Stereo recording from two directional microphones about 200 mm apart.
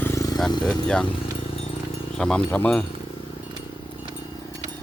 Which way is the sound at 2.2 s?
5° left (ahead or behind).